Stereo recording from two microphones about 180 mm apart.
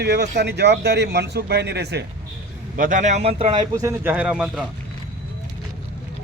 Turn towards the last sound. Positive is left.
turn(degrees=-5)  # may be behind; listen again after turning